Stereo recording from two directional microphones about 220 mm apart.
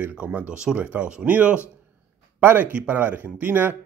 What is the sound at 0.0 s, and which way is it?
Speech, 10° right (ahead or behind).